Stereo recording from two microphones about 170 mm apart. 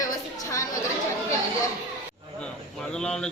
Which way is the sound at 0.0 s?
20° left (ahead or behind).